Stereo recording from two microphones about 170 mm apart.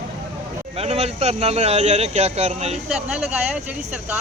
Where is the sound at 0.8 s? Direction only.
40° right (ahead or behind).